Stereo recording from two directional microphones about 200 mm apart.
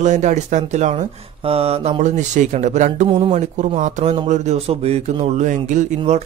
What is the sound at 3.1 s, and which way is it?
Speech, 25° right (ahead or behind).